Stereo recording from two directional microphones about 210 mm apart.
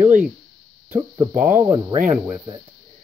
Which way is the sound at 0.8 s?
10° right (ahead or behind).